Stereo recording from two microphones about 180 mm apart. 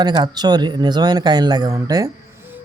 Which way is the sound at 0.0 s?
25° right (ahead or behind).